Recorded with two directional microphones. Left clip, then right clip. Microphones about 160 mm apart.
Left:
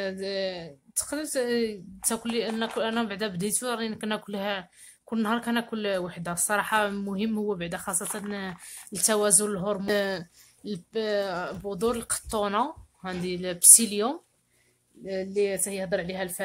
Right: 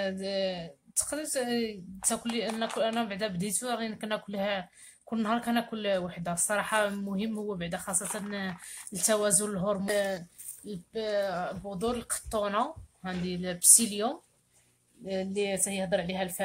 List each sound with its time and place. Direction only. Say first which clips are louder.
0.0 s speech: left 1 dB; 30° left (ahead or behind)